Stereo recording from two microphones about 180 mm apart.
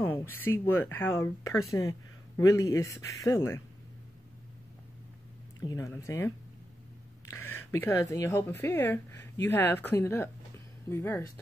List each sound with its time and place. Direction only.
0.0 s speech: 10° left (ahead or behind)
5.7 s speech: 15° left (ahead or behind)